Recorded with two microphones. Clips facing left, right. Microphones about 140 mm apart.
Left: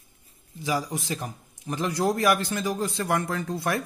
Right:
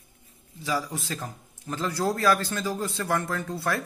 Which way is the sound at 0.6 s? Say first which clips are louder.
Left 2 dB; 15° left (ahead or behind).